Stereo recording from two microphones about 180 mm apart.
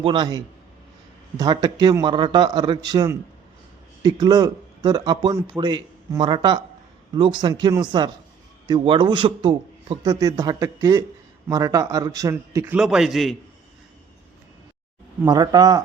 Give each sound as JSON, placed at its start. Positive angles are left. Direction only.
{"t": 0.0, "sound": "speech", "side_deg": -25}
{"t": 12.8, "sound": "a man's voice", "side_deg": 0}
{"t": 15.3, "sound": "speech", "side_deg": -20}